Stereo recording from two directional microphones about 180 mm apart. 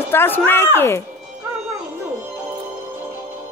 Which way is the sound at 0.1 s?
10° left (ahead or behind).